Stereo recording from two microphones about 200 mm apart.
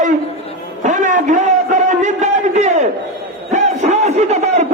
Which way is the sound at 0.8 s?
40° right (ahead or behind).